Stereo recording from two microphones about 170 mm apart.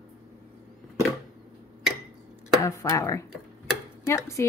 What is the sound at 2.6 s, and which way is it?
Speech, 15° left (ahead or behind).